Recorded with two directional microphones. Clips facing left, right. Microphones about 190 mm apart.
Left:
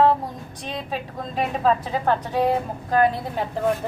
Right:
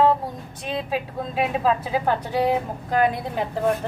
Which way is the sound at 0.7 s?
5° right (ahead or behind).